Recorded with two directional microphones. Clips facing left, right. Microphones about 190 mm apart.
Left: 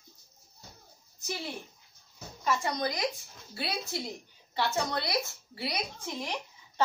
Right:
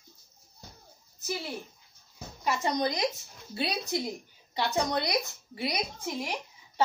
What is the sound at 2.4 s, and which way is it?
A woman's voice, 15° right (ahead or behind).